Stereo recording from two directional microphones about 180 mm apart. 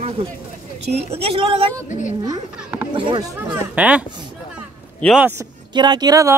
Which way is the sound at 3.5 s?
10° right (ahead or behind).